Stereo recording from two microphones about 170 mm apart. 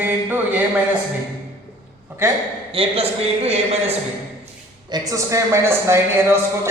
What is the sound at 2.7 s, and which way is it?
A man's voice, 35° right (ahead or behind).